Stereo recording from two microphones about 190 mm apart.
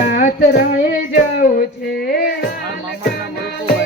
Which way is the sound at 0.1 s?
50° left (ahead or behind).